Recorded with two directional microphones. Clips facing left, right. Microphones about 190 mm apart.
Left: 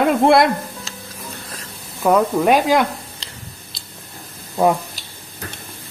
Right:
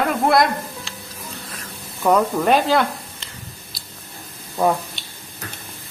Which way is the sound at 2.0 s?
10° left (ahead or behind).